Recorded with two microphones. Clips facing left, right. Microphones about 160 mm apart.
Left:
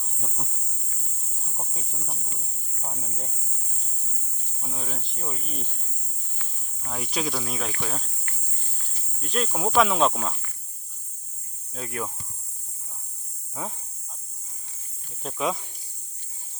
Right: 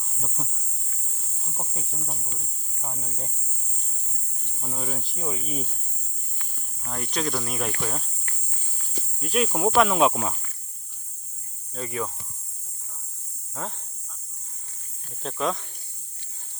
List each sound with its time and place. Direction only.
0.0 s speech: centre (ahead or behind)
1.5 s speech: centre (ahead or behind)
4.6 s speech: centre (ahead or behind)
6.8 s speech: 5° left (ahead or behind)
9.2 s speech: 5° right (ahead or behind)
11.7 s speech: centre (ahead or behind)
15.2 s speech: 5° left (ahead or behind)